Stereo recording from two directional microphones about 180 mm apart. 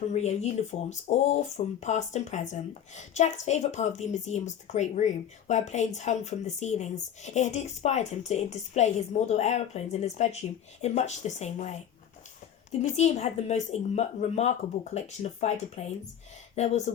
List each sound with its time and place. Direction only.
0.1 s speech: 40° left (ahead or behind)
12.8 s speech: 40° left (ahead or behind)